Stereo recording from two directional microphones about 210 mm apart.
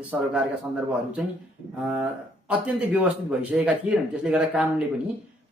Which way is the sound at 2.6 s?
5° right (ahead or behind).